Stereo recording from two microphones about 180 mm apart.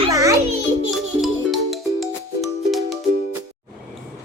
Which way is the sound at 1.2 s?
Centre (ahead or behind).